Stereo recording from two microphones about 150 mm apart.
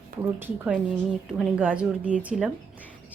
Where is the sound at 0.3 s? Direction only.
15° right (ahead or behind).